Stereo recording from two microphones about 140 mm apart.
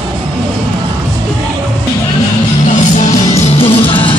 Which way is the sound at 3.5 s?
40° left (ahead or behind).